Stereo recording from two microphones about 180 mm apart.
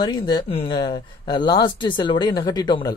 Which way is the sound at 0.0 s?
25° left (ahead or behind).